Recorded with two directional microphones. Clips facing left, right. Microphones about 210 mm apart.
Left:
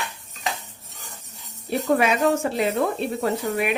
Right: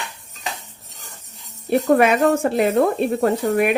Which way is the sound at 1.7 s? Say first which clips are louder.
Right 5 dB; 55° right (ahead or behind).